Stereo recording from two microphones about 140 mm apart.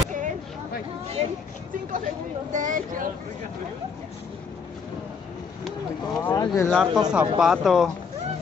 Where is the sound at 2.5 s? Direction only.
70° right (ahead or behind).